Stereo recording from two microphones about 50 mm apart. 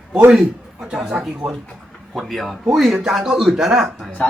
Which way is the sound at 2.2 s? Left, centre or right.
Centre.